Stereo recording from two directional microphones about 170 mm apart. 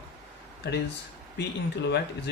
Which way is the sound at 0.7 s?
75° left (ahead or behind).